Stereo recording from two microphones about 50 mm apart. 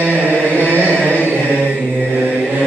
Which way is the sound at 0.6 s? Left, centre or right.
Right.